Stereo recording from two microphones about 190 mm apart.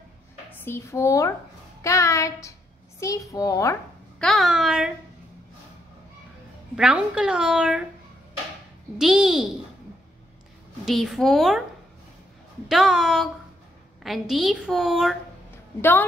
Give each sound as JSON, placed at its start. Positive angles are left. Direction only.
{"t": 0.5, "sound": "a child's voice", "side_deg": 15}
{"t": 4.2, "sound": "a woman's voice", "side_deg": 0}
{"t": 6.7, "sound": "a woman's voice", "side_deg": -5}
{"t": 8.9, "sound": "a woman's voice", "side_deg": -5}
{"t": 10.9, "sound": "a woman's voice", "side_deg": 0}
{"t": 12.6, "sound": "a woman's voice", "side_deg": 0}
{"t": 15.8, "sound": "a child's voice", "side_deg": 10}